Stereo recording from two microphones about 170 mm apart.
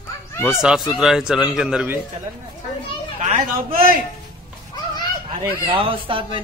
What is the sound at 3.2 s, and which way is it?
Speech, 40° right (ahead or behind).